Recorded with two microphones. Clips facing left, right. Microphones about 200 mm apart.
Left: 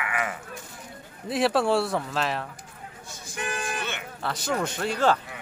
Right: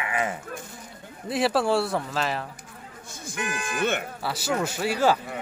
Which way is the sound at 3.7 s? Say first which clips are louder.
Right 8 dB; 50° right (ahead or behind).